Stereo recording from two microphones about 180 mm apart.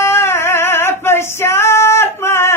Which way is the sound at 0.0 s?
15° left (ahead or behind).